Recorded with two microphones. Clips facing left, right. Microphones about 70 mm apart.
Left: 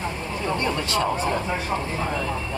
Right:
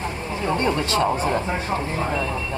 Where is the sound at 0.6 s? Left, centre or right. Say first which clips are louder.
Right 4 dB; right.